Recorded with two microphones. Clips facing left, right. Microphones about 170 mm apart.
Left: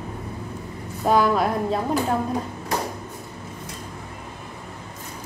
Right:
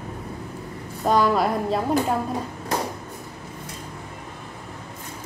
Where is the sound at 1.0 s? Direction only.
Centre (ahead or behind).